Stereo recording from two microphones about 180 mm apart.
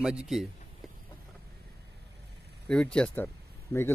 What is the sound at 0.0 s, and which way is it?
Speech, 5° right (ahead or behind).